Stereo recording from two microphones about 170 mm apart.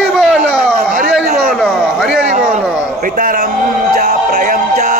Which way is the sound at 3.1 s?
55° right (ahead or behind).